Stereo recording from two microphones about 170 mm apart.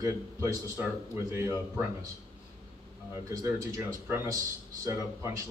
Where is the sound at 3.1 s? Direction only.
20° right (ahead or behind).